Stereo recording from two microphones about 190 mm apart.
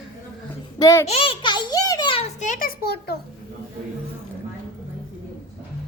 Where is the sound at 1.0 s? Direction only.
30° left (ahead or behind).